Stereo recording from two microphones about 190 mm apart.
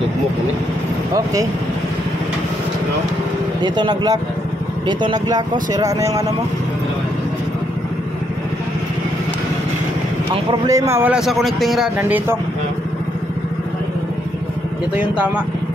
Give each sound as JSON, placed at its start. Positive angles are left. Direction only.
{"t": 1.1, "sound": "speech", "side_deg": -20}
{"t": 3.6, "sound": "speech", "side_deg": -20}
{"t": 10.3, "sound": "speech", "side_deg": -20}
{"t": 12.0, "sound": "speech", "side_deg": -10}
{"t": 15.0, "sound": "speech", "side_deg": -5}